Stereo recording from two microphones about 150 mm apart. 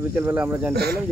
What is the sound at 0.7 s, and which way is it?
Speech, 90° right.